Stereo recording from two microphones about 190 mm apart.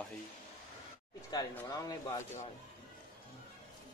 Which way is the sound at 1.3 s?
20° left (ahead or behind).